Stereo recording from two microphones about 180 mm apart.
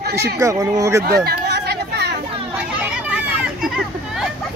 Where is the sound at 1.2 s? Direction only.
60° right (ahead or behind).